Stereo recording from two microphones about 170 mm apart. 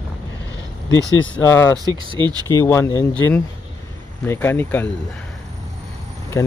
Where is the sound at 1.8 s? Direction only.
25° right (ahead or behind).